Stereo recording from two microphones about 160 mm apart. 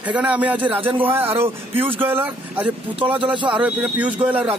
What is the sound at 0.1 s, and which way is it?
Speech, 10° right (ahead or behind).